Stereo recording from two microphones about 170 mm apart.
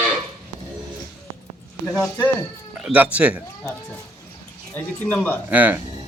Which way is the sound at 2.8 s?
10° right (ahead or behind).